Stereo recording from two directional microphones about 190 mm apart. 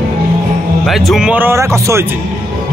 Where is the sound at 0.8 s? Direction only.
Centre (ahead or behind); by 2.0 s 15° right (ahead or behind).